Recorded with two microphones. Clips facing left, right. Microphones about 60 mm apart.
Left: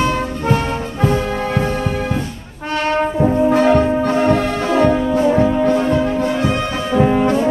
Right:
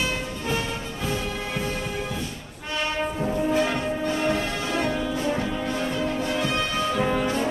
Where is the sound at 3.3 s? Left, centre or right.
Left.